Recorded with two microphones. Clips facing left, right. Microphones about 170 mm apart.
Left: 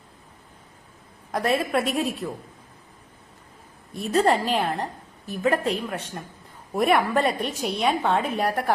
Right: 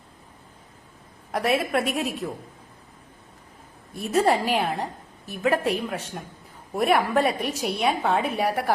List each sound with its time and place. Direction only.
1.3 s a woman's voice: 5° right (ahead or behind)
3.9 s a woman's voice: 5° right (ahead or behind)